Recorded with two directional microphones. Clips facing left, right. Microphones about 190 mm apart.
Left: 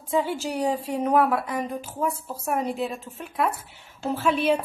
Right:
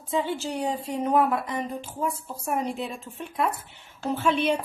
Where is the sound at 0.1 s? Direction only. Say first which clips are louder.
Left 2 dB; 10° left (ahead or behind).